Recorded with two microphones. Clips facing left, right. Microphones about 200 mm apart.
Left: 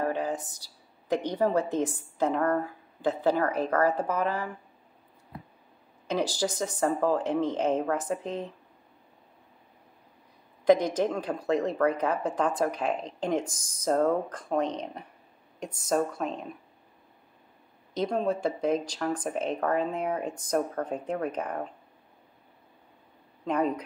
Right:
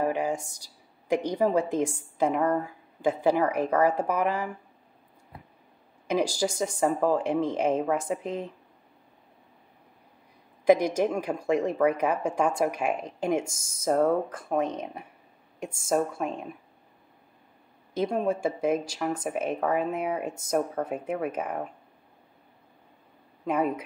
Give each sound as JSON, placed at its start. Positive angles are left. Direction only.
{"t": 0.0, "sound": "a sound", "side_deg": -10}
{"t": 1.0, "sound": "speech", "side_deg": -10}
{"t": 6.0, "sound": "speech", "side_deg": -10}
{"t": 10.6, "sound": "speech", "side_deg": -10}
{"t": 17.9, "sound": "speech", "side_deg": -10}
{"t": 23.4, "sound": "speech", "side_deg": -10}